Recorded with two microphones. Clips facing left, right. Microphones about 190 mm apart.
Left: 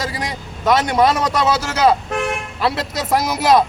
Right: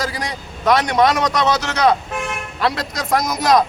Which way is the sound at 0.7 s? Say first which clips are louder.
Even; centre (ahead or behind).